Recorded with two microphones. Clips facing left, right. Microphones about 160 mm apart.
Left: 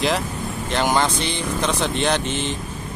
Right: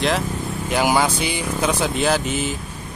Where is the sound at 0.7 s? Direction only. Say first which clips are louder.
Right 2 dB; 10° right (ahead or behind).